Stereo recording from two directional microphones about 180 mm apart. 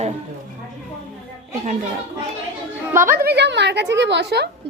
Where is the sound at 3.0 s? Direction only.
55° right (ahead or behind).